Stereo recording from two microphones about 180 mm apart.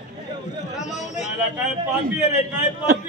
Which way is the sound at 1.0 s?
40° left (ahead or behind).